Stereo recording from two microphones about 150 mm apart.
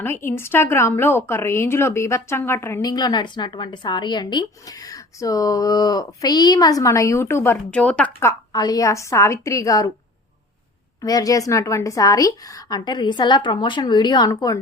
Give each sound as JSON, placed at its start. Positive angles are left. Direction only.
{"t": 0.0, "sound": "a woman's voice", "side_deg": 15}
{"t": 11.0, "sound": "a woman's voice", "side_deg": 25}